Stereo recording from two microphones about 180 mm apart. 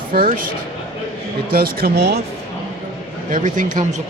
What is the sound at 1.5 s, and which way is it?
Speech, 55° right (ahead or behind).